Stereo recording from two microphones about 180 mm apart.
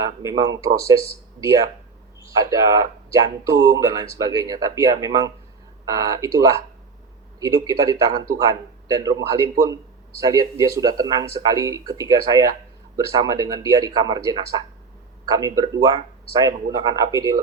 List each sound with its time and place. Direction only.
0.0 s speech: 20° right (ahead or behind)
16.7 s speech: 20° right (ahead or behind)